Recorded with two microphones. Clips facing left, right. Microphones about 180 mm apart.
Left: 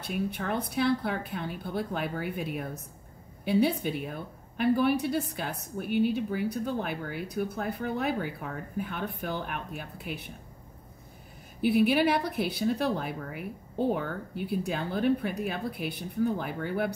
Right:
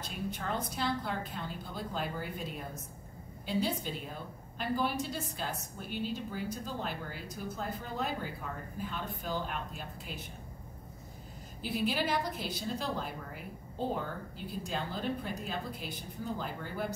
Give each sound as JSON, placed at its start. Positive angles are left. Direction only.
{"t": 0.0, "sound": "a woman's voice", "side_deg": 60}
{"t": 11.6, "sound": "a woman's voice", "side_deg": 65}